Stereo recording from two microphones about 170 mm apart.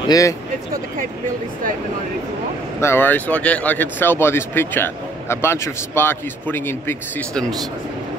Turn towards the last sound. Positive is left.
turn(degrees=10)  # may be behind; listen again after turning